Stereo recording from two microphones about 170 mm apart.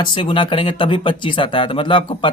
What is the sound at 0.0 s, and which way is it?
Speech, 30° left (ahead or behind).